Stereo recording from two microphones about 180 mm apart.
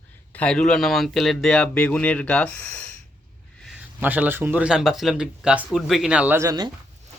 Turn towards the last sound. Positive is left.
turn(degrees=-20)  # may be behind; listen again after turning